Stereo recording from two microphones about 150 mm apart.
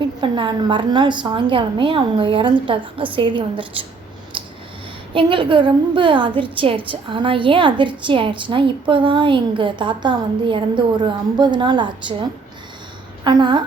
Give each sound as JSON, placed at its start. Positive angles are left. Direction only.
{"t": 0.2, "sound": "a woman's voice", "side_deg": -30}
{"t": 5.1, "sound": "a woman's voice", "side_deg": -35}
{"t": 13.2, "sound": "a woman's voice", "side_deg": -30}